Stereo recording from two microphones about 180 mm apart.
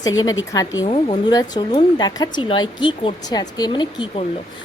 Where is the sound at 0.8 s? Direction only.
30° left (ahead or behind).